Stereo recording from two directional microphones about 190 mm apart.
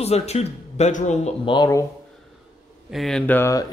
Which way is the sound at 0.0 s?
35° left (ahead or behind).